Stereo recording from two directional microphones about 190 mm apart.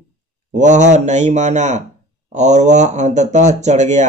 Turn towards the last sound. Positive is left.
turn(degrees=-40)  # may be behind; listen again after turning